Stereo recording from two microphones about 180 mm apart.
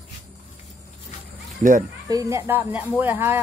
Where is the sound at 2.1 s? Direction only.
20° right (ahead or behind).